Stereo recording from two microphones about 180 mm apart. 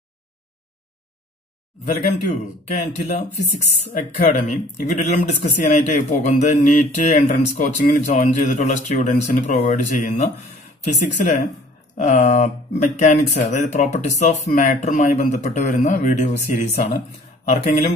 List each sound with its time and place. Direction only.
2.8 s speech: 40° left (ahead or behind)